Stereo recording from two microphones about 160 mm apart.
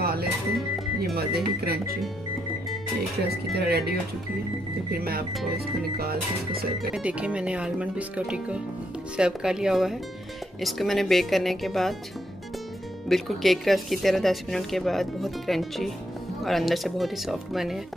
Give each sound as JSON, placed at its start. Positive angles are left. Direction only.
{"t": 0.0, "sound": "music", "side_deg": -75}
{"t": 0.6, "sound": "music", "side_deg": 0}
{"t": 1.1, "sound": "speech", "side_deg": -75}
{"t": 3.5, "sound": "speech", "side_deg": -80}
{"t": 4.9, "sound": "speech", "side_deg": -70}
{"t": 6.9, "sound": "speech", "side_deg": -5}
{"t": 13.1, "sound": "speech", "side_deg": 0}